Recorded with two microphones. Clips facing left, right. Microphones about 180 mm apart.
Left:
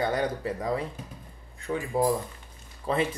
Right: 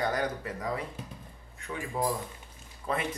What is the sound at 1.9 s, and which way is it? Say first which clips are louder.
A man's voice: left 6 dB; 30° left (ahead or behind).